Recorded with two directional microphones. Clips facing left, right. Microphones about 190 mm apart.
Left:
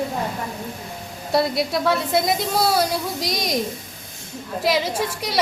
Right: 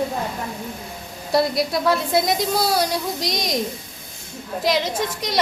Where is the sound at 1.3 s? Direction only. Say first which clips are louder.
Right 1 dB; centre (ahead or behind).